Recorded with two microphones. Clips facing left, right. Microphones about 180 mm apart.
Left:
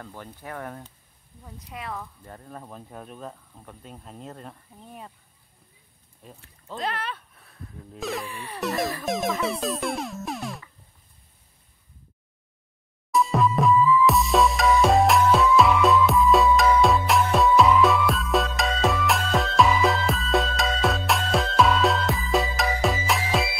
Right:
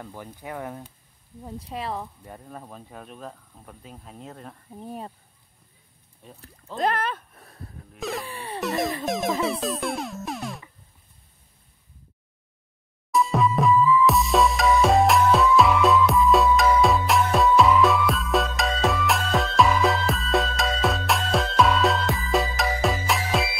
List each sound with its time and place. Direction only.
0.0 s speech: 10° right (ahead or behind)
1.4 s speech: 30° right (ahead or behind)
2.2 s speech: 10° right (ahead or behind)
6.8 s a sound: 45° right (ahead or behind)
8.0 s speech: centre (ahead or behind)
8.3 s speech: 30° right (ahead or behind)
8.5 s speech: centre (ahead or behind)
9.0 s music: centre (ahead or behind)
13.1 s music: centre (ahead or behind)